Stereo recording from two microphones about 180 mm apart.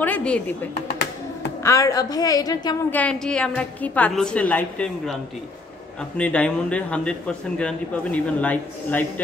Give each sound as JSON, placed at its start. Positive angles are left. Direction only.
{"t": 0.0, "sound": "a man's voice", "side_deg": 5}
{"t": 2.9, "sound": "a man's voice", "side_deg": 5}